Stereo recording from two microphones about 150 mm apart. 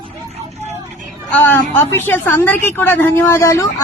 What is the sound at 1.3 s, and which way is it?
A woman's voice, 15° left (ahead or behind).